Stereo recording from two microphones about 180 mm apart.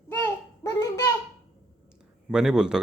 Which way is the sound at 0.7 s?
15° left (ahead or behind).